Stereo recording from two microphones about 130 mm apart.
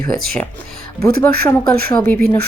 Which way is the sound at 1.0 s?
15° left (ahead or behind).